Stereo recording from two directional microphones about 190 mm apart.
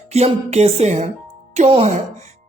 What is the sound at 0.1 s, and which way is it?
A woman's voice, 35° right (ahead or behind).